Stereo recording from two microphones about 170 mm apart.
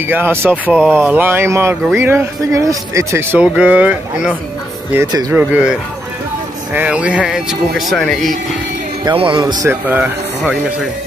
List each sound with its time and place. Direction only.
0.1 s speech: 15° right (ahead or behind); by 8.4 s 5° left (ahead or behind)
9.0 s speech: 30° right (ahead or behind); by 10.6 s 5° right (ahead or behind)